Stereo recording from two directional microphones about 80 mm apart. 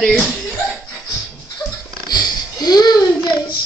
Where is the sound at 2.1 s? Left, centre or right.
Left.